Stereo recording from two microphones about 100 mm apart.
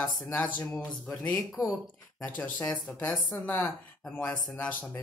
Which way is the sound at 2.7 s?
15° left (ahead or behind).